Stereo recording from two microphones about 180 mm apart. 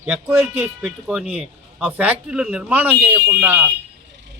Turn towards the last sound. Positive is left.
turn(degrees=-10)  # may be behind; listen again after turning